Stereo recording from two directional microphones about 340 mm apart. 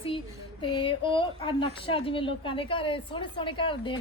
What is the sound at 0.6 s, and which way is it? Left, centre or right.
A woman's voice, centre.